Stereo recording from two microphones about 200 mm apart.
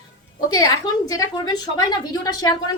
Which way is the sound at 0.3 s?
20° left (ahead or behind).